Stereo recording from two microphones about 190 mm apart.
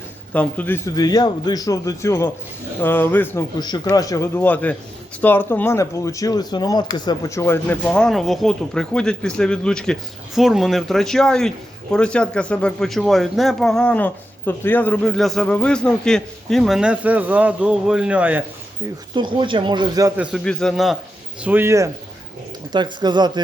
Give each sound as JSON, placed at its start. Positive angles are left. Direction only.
{"t": 0.3, "sound": "a man's voice", "side_deg": 10}
{"t": 3.6, "sound": "a man's voice", "side_deg": 20}
{"t": 19.1, "sound": "speech", "side_deg": -25}
{"t": 20.2, "sound": "speech", "side_deg": 0}
{"t": 21.4, "sound": "speech", "side_deg": -10}